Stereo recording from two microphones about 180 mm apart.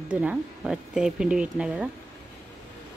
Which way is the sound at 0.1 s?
5° right (ahead or behind).